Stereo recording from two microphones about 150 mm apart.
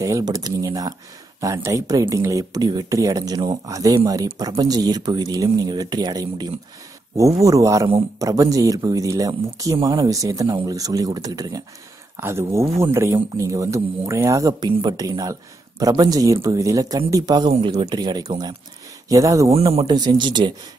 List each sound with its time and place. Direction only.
0.0 s speech: 25° right (ahead or behind)
17.5 s speech: 40° right (ahead or behind); by 19.5 s 20° right (ahead or behind)
19.5 s speech: 40° right (ahead or behind)